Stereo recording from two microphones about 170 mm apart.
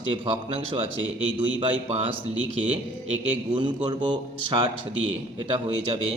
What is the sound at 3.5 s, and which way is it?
A man's voice, 30° right (ahead or behind).